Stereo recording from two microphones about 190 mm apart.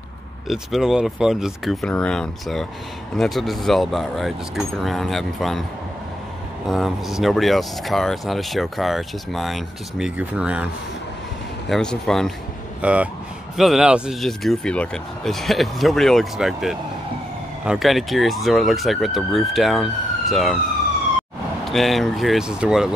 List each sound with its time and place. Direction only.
0.5 s speech: centre (ahead or behind)
6.7 s speech: centre (ahead or behind)
11.7 s speech: 5° left (ahead or behind)
21.6 s speech: centre (ahead or behind)